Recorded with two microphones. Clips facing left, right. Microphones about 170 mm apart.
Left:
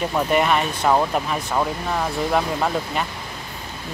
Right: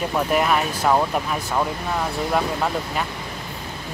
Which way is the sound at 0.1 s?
Centre (ahead or behind).